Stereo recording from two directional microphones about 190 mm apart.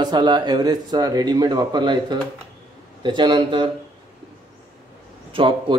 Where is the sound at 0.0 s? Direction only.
25° right (ahead or behind).